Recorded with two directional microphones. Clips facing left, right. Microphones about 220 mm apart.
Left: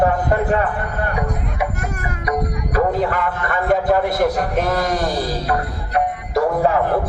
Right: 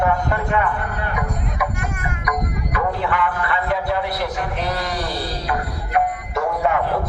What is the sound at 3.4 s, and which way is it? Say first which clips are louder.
A man's voice: left 5 dB; 45° left (ahead or behind).